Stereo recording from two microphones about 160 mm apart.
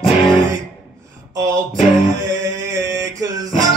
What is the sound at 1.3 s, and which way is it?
Music, 20° right (ahead or behind).